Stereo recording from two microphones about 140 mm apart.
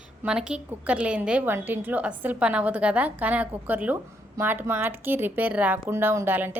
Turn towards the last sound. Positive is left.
turn(degrees=-15)  # may be behind; listen again after turning